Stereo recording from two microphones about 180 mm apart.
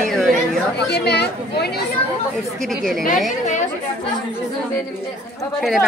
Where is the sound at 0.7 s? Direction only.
65° left (ahead or behind).